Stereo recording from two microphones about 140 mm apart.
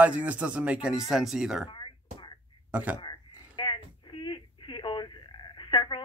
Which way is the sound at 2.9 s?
30° left (ahead or behind).